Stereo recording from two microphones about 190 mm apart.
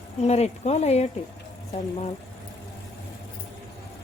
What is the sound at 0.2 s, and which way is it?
Speech, 35° left (ahead or behind).